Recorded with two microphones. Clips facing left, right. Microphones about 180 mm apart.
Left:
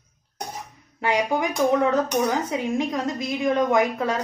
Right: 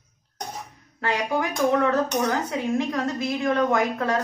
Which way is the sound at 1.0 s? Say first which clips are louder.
Left 2 dB; 15° left (ahead or behind).